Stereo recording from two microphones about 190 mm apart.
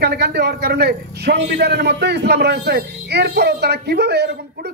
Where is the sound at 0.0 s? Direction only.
60° right (ahead or behind).